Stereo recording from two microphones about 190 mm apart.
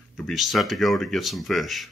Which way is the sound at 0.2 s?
Centre (ahead or behind).